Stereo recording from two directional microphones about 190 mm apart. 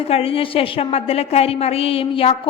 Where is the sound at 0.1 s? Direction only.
30° left (ahead or behind).